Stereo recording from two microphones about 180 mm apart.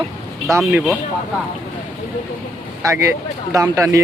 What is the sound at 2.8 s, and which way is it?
Speech, 15° right (ahead or behind).